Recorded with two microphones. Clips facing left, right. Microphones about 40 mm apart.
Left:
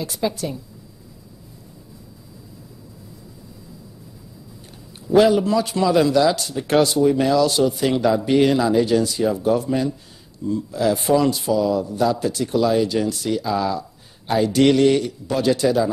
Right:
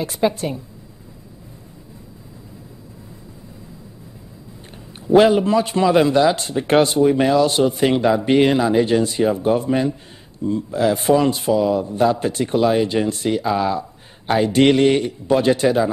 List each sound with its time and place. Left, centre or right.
0.0 s a man's voice: right
4.9 s a man's voice: right